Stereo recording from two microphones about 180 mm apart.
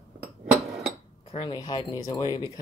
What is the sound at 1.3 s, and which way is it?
Speech, 25° left (ahead or behind).